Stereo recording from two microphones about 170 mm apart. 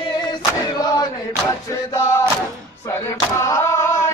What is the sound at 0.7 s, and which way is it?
Chant, 25° left (ahead or behind).